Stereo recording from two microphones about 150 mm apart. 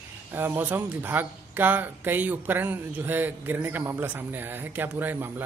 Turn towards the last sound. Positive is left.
turn(degrees=-15)  # may be behind; listen again after turning